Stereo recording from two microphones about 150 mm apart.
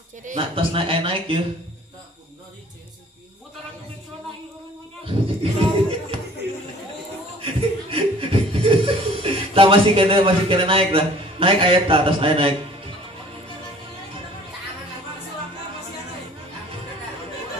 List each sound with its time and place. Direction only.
0.4 s a man's voice: 35° right (ahead or behind)
5.0 s a sound: 35° right (ahead or behind)
7.4 s chuckle: 40° right (ahead or behind)